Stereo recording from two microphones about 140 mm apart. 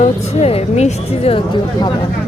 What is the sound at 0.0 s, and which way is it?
Speech, 50° left (ahead or behind).